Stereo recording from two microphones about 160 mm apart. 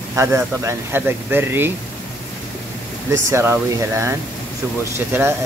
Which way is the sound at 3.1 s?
15° right (ahead or behind).